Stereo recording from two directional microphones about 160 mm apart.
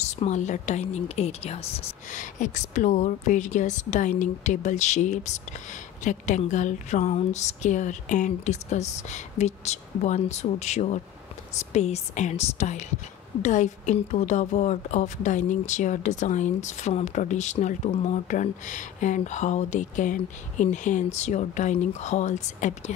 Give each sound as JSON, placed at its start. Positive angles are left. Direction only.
{"t": 0.0, "sound": "a woman's voice", "side_deg": 45}